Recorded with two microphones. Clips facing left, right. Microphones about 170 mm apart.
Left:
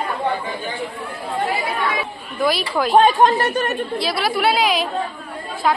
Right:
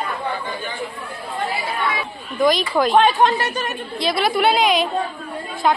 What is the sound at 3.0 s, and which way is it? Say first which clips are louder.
Speech: left 4 dB; 45° left (ahead or behind).